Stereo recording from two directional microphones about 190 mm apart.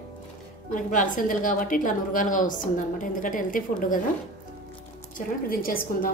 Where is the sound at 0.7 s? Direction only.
45° left (ahead or behind).